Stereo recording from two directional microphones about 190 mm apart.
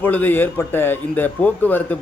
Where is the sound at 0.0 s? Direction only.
10° left (ahead or behind).